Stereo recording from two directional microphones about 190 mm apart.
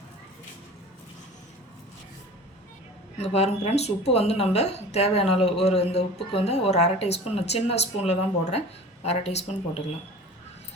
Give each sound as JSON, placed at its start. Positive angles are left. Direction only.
{"t": 3.2, "sound": "speech", "side_deg": 35}